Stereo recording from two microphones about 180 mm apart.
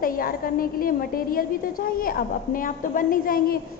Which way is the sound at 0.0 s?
55° left (ahead or behind).